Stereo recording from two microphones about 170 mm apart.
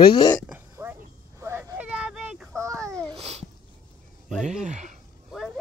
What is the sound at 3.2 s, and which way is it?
Babbling, 35° right (ahead or behind).